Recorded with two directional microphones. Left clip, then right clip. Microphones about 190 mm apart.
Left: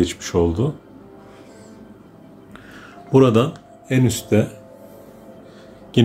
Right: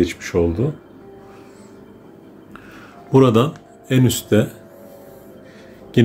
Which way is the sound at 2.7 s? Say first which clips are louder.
Even; 5° right (ahead or behind).